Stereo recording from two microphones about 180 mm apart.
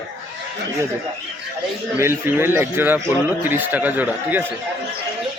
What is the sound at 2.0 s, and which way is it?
A man's voice, 15° right (ahead or behind).